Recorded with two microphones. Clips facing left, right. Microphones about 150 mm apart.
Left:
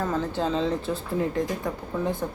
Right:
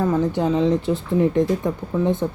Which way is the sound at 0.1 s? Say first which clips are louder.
Right 6 dB; 15° right (ahead or behind).